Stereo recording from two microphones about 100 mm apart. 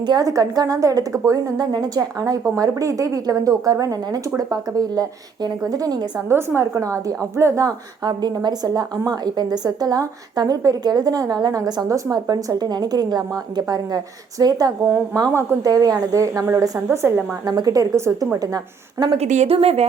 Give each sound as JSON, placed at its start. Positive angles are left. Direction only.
{"t": 0.0, "sound": "a woman's voice", "side_deg": -40}
{"t": 6.1, "sound": "a woman's voice", "side_deg": -25}
{"t": 8.0, "sound": "a woman's voice", "side_deg": -45}
{"t": 18.3, "sound": "a woman's voice", "side_deg": -40}
{"t": 19.1, "sound": "speech", "side_deg": -85}